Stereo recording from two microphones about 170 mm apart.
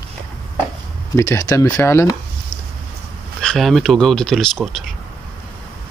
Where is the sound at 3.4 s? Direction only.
5° left (ahead or behind).